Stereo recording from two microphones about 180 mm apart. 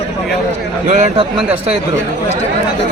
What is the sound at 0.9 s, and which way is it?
Speech, 35° right (ahead or behind).